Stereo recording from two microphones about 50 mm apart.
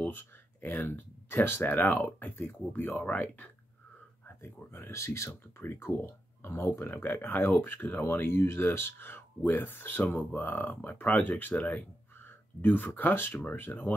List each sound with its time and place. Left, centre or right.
0.0 s a sound: left
0.9 s speech: left
4.4 s speech: left
5.6 s speech: left